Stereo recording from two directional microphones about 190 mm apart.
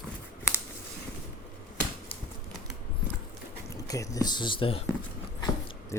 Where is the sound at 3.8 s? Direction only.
15° left (ahead or behind).